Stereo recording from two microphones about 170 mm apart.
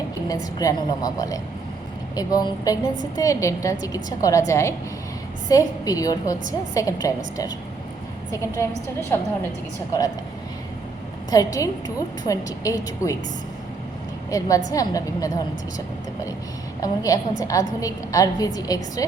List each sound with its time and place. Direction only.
0.3 s a woman's voice: 20° left (ahead or behind)
11.3 s a woman's voice: 20° left (ahead or behind)
14.3 s a woman's voice: 20° left (ahead or behind)
16.8 s a woman's voice: 20° left (ahead or behind)